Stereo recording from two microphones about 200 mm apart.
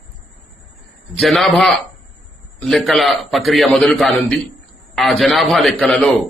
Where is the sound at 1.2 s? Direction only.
Centre (ahead or behind).